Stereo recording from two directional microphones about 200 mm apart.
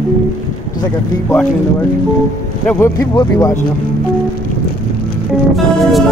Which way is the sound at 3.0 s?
20° left (ahead or behind).